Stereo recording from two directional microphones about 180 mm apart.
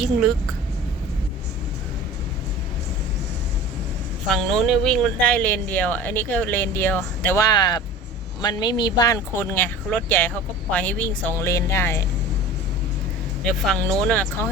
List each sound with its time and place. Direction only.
0.0 s speech: centre (ahead or behind)
4.3 s speech: centre (ahead or behind)
7.4 s speech: 25° left (ahead or behind)
13.4 s speech: centre (ahead or behind)